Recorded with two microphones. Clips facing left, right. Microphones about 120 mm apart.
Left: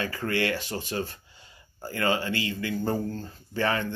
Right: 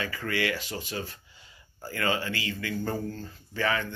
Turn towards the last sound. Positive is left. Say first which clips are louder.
# left 2 dB
turn(degrees=35)  # may be behind; listen again after turning